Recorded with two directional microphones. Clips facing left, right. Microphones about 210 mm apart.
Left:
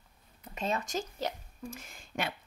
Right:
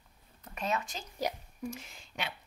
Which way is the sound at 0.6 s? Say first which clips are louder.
Left 2 dB; 35° left (ahead or behind).